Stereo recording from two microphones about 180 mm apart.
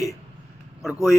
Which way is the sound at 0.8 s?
Centre (ahead or behind).